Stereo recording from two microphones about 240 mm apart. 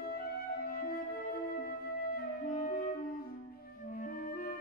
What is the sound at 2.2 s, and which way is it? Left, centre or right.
Music, left.